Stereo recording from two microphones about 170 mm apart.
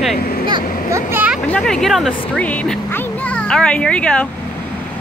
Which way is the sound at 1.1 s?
10° right (ahead or behind).